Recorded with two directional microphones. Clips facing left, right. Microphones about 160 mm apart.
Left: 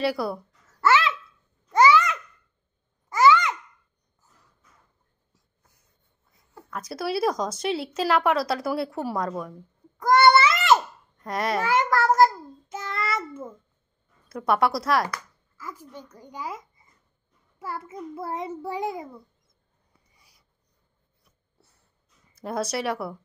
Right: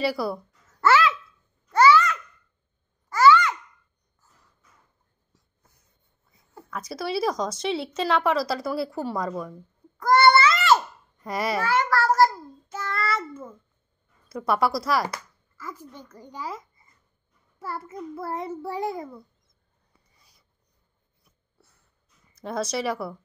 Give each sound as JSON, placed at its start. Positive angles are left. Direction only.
{"t": 0.0, "sound": "speech", "side_deg": 0}
{"t": 1.7, "sound": "babbling", "side_deg": 15}
{"t": 6.7, "sound": "speech", "side_deg": 0}
{"t": 9.9, "sound": "a sound", "side_deg": 20}
{"t": 11.1, "sound": "speech", "side_deg": -5}
{"t": 11.6, "sound": "child singing", "side_deg": 20}
{"t": 14.3, "sound": "speech", "side_deg": 0}
{"t": 15.6, "sound": "a child's voice", "side_deg": 15}
{"t": 22.3, "sound": "speech", "side_deg": 5}